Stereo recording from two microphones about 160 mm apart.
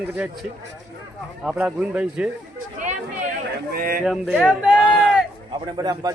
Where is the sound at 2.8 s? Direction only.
50° right (ahead or behind).